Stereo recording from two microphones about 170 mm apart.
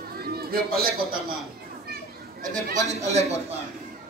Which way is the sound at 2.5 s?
45° right (ahead or behind).